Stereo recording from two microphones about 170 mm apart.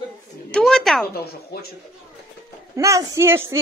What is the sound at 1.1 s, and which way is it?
Speech, 65° left (ahead or behind).